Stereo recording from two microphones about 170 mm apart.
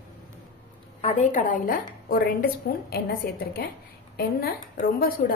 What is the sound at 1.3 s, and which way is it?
A woman's voice, 50° left (ahead or behind).